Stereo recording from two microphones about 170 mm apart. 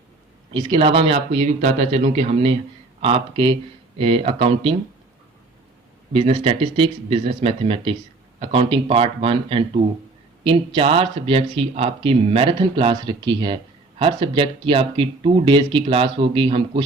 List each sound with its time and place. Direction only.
0.5 s speech: 30° right (ahead or behind)
6.1 s speech: 35° right (ahead or behind)